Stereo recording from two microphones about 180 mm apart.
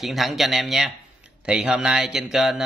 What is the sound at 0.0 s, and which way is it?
Speech, centre (ahead or behind).